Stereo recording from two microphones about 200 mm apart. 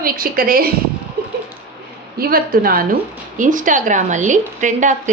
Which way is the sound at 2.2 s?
45° right (ahead or behind).